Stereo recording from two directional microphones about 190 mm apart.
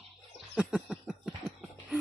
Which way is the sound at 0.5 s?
5° right (ahead or behind).